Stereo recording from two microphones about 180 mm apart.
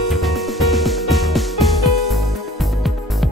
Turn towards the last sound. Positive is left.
turn(degrees=0)  # may be behind; listen again after turning